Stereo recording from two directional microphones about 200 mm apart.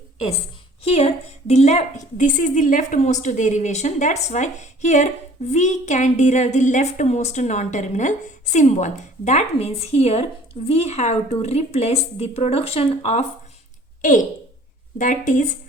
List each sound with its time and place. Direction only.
0.9 s a woman's voice: 30° left (ahead or behind)
14.9 s a woman's voice: 40° left (ahead or behind)